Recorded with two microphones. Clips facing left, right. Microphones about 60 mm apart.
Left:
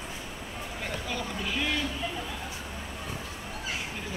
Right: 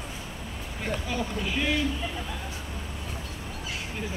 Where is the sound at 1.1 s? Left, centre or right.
Centre.